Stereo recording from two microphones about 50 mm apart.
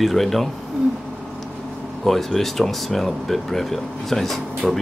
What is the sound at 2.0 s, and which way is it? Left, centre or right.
Speech, centre.